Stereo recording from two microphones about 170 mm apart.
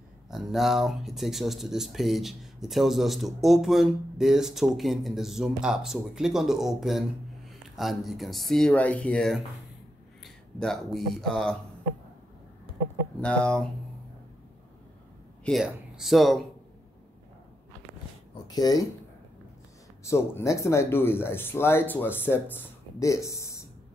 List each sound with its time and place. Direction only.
0.3 s speech: centre (ahead or behind)
13.2 s speech: 5° left (ahead or behind)
15.4 s speech: centre (ahead or behind)
18.3 s speech: 25° left (ahead or behind)
20.0 s speech: 15° left (ahead or behind)